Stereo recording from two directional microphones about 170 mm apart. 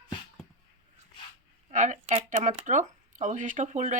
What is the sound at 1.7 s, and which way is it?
Speech, 45° right (ahead or behind).